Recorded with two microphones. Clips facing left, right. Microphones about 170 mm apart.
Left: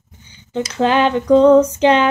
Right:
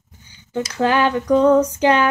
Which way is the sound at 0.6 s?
25° left (ahead or behind).